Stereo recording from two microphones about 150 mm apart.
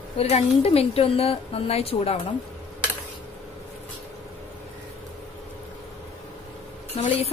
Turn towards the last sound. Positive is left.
turn(degrees=45)  # may be behind; listen again after turning